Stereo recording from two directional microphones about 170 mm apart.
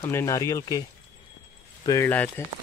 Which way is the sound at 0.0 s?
15° left (ahead or behind).